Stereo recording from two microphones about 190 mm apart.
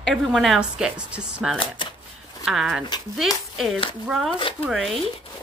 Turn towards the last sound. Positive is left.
turn(degrees=0)  # may be behind; listen again after turning